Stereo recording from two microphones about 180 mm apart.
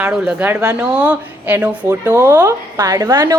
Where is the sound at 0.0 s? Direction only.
5° right (ahead or behind).